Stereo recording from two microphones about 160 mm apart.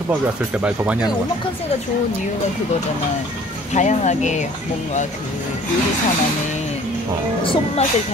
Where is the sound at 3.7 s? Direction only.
45° left (ahead or behind).